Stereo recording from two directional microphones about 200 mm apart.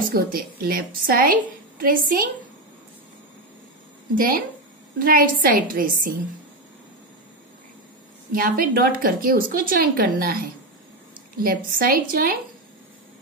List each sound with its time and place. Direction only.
0.1 s a woman's voice: 45° right (ahead or behind)
4.1 s a woman's voice: 45° right (ahead or behind)
8.3 s a woman's voice: 45° right (ahead or behind)
11.4 s a woman's voice: 45° right (ahead or behind)